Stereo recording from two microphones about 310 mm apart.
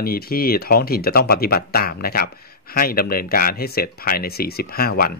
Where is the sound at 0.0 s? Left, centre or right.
Left.